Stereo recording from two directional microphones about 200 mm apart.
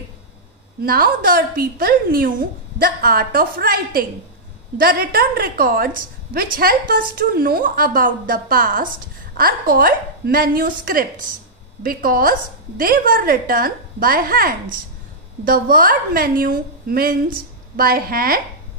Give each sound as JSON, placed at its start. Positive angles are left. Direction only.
{"t": 0.8, "sound": "a woman's voice", "side_deg": -45}